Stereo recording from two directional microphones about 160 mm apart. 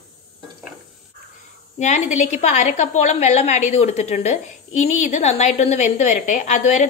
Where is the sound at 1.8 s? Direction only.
50° left (ahead or behind).